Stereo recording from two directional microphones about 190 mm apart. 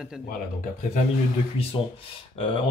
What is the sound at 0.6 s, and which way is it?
Speech, 40° left (ahead or behind).